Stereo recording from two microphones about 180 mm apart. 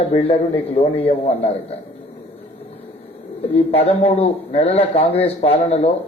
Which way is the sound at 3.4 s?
35° left (ahead or behind).